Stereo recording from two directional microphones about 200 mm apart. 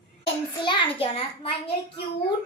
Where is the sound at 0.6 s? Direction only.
25° left (ahead or behind).